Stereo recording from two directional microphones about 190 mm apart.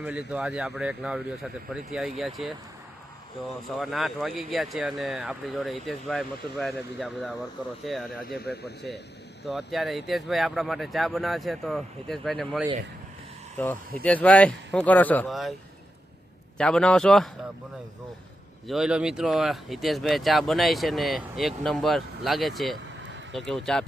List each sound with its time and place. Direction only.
0.0 s speech: 5° right (ahead or behind)
3.8 s speech: centre (ahead or behind)
8.4 s speech: 60° left (ahead or behind)
9.4 s speech: centre (ahead or behind)
16.6 s speech: 5° left (ahead or behind)
18.7 s speech: 5° right (ahead or behind)